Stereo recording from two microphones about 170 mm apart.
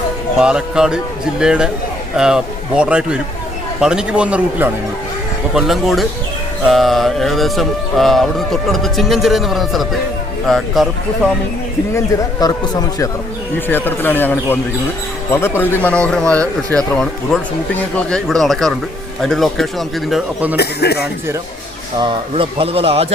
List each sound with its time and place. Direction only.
0.3 s a man's voice: 5° right (ahead or behind)
11.9 s speech: 20° left (ahead or behind)
13.7 s speech: 10° left (ahead or behind); by 20.6 s 5° right (ahead or behind)
20.6 s a man's voice: 70° left (ahead or behind)
21.9 s speech: 35° right (ahead or behind)